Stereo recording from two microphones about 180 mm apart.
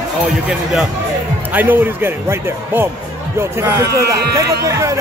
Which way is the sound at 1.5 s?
10° right (ahead or behind).